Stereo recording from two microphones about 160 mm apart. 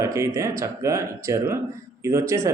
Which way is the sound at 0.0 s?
20° right (ahead or behind).